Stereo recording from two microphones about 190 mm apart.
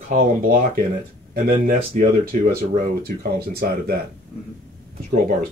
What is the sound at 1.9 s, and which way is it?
Speech, 45° right (ahead or behind).